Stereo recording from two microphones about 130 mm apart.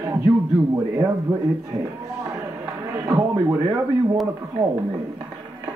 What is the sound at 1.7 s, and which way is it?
Speech, 25° right (ahead or behind).